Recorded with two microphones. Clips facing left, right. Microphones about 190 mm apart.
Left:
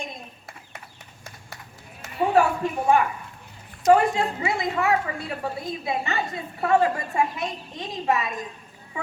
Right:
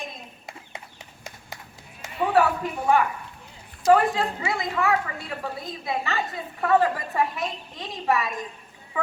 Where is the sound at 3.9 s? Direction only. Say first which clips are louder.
Left 1 dB; 20° left (ahead or behind).